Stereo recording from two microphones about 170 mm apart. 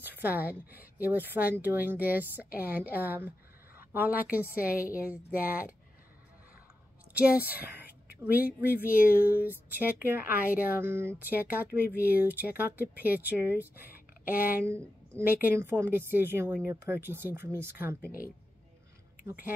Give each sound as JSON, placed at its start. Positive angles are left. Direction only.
{"t": 0.0, "sound": "a woman's voice", "side_deg": -10}
{"t": 4.7, "sound": "a woman's voice", "side_deg": 55}
{"t": 5.0, "sound": "speech", "side_deg": -10}
{"t": 7.2, "sound": "a woman's voice", "side_deg": -10}